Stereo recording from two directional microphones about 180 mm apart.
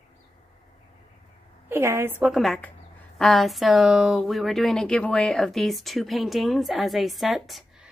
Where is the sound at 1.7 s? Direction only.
15° right (ahead or behind).